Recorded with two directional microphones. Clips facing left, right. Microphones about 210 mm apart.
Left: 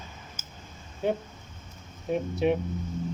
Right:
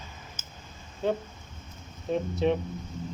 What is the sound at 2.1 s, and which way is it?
Speech, 10° left (ahead or behind).